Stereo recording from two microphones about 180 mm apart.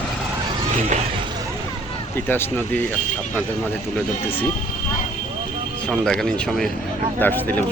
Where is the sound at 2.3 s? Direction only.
10° left (ahead or behind).